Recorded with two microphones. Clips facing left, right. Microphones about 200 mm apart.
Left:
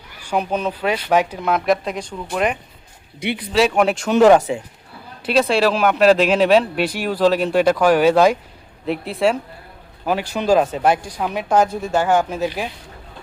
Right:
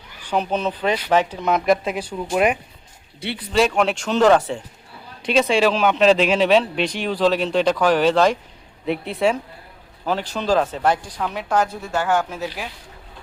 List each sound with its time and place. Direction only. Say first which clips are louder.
0.2 s speech: left 1 dB; 10° left (ahead or behind); by 2.6 s 10° right (ahead or behind)
3.2 s speech: left 5 dB; 15° left (ahead or behind)
3.5 s speech: left 2 dB; 5° left (ahead or behind)